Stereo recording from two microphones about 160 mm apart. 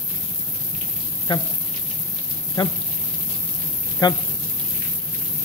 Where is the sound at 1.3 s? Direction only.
30° left (ahead or behind).